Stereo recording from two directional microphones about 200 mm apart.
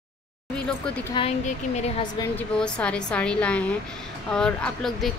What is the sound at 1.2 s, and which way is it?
Speech, 25° left (ahead or behind).